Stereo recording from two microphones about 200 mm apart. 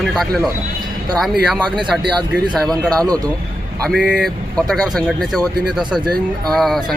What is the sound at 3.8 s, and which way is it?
Speech, centre (ahead or behind).